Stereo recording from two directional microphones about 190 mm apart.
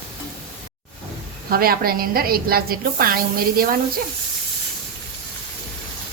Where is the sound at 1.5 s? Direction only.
50° right (ahead or behind).